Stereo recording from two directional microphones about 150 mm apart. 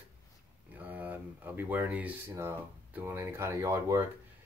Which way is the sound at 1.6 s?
10° right (ahead or behind).